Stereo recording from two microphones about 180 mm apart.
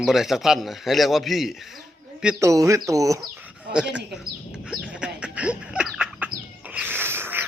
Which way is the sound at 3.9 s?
5° right (ahead or behind).